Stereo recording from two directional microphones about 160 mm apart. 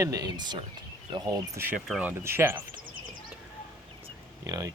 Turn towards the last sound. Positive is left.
turn(degrees=-20)  # may be behind; listen again after turning